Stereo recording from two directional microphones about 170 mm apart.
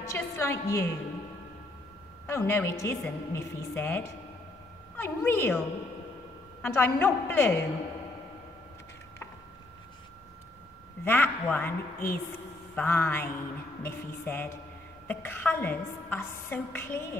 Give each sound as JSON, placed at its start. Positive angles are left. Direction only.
{"t": 0.0, "sound": "a woman's voice", "side_deg": 15}
{"t": 2.2, "sound": "a woman's voice", "side_deg": 10}
{"t": 6.6, "sound": "a woman's voice", "side_deg": 10}
{"t": 11.1, "sound": "a woman's voice", "side_deg": 10}